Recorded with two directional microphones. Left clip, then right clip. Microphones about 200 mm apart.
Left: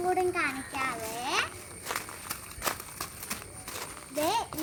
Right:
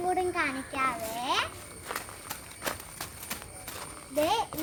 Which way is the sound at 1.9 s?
60° left (ahead or behind).